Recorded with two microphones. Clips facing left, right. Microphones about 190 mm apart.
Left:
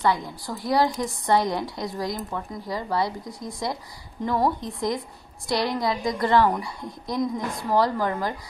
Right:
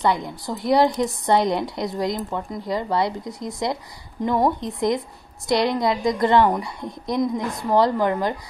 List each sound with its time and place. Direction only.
0.0 s a woman's voice: 20° right (ahead or behind)